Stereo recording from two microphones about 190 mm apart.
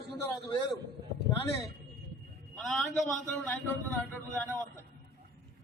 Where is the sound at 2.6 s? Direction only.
5° left (ahead or behind).